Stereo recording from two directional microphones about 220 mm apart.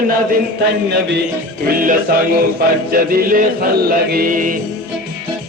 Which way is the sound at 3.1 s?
40° right (ahead or behind).